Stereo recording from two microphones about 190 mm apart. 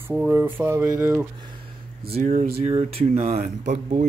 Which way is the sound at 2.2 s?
40° right (ahead or behind).